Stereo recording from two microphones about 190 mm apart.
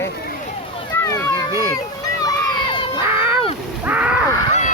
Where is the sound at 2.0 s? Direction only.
20° left (ahead or behind).